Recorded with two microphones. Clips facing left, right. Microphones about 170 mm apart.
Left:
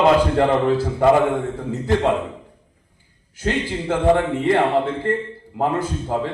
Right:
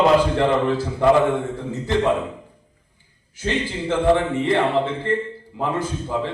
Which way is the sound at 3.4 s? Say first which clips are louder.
Left 1 dB; 55° left (ahead or behind).